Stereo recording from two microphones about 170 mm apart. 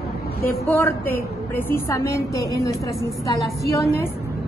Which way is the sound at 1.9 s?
20° left (ahead or behind).